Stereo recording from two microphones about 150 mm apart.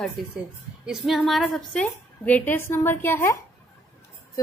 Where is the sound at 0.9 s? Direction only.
Centre (ahead or behind).